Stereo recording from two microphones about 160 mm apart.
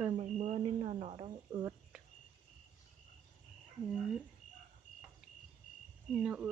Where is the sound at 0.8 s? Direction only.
35° right (ahead or behind).